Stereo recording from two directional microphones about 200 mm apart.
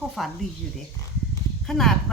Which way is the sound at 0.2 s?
Centre (ahead or behind).